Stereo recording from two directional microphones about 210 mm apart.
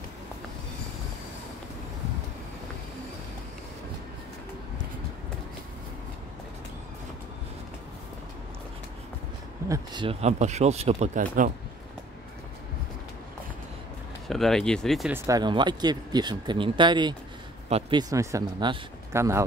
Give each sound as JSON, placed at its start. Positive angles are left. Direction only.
{"t": 9.7, "sound": "speech", "side_deg": -25}
{"t": 14.2, "sound": "speech", "side_deg": 0}
{"t": 15.1, "sound": "speech", "side_deg": -15}